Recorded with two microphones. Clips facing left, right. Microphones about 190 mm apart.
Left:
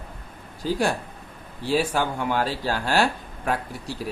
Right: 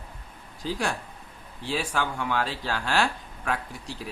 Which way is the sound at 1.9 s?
40° left (ahead or behind).